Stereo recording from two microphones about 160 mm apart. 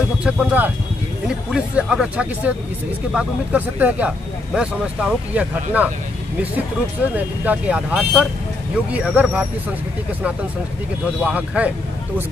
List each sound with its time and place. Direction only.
0.2 s speech: 5° right (ahead or behind)
7.2 s speech: 10° right (ahead or behind)
11.1 s speech: 5° right (ahead or behind)